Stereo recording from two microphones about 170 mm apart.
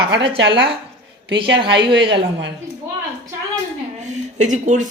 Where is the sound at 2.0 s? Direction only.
30° right (ahead or behind).